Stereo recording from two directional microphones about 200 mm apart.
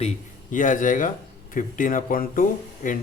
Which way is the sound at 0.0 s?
40° left (ahead or behind).